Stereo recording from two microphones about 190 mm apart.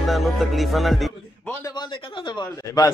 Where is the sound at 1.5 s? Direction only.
20° left (ahead or behind).